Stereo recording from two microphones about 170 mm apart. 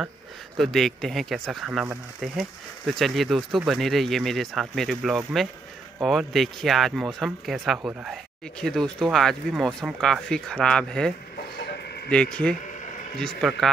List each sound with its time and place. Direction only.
0.6 s speech: centre (ahead or behind)